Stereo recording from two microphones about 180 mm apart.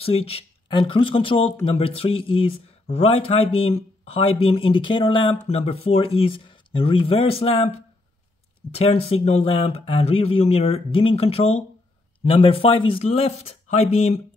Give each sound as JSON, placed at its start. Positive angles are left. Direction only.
{"t": 0.0, "sound": "speech", "side_deg": 35}
{"t": 8.7, "sound": "speech", "side_deg": 35}